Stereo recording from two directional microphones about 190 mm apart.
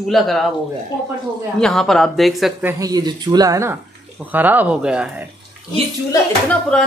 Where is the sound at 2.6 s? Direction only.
15° right (ahead or behind).